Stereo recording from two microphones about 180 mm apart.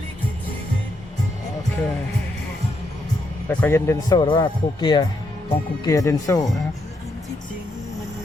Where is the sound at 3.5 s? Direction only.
10° left (ahead or behind).